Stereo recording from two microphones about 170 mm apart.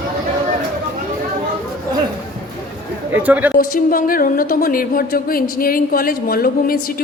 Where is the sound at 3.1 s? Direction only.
10° right (ahead or behind).